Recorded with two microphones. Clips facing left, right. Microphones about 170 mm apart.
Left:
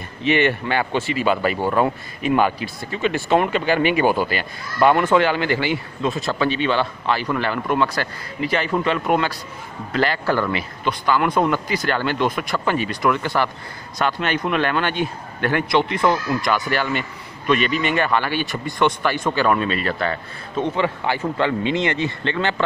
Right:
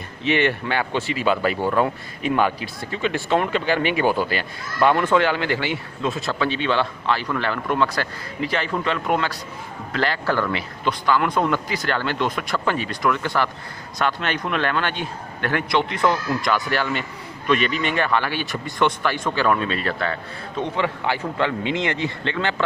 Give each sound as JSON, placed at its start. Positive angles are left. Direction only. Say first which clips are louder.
{"t": 0.2, "sound": "speech", "louder": "left 2 dB", "side_deg": 0}